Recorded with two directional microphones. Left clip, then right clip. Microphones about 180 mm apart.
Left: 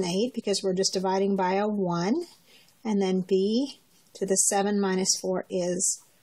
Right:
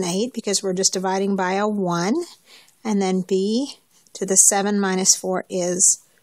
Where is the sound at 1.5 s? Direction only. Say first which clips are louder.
Right 5 dB; 40° right (ahead or behind).